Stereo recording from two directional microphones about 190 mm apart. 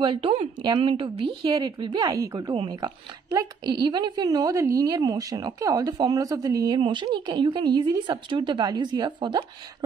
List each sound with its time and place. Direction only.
0.0 s speech: 25° right (ahead or behind)